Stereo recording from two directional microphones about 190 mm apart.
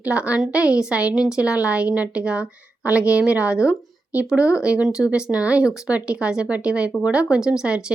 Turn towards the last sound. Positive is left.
turn(degrees=-5)  # may be behind; listen again after turning